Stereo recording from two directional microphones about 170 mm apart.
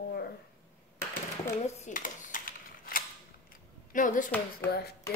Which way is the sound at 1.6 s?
45° left (ahead or behind).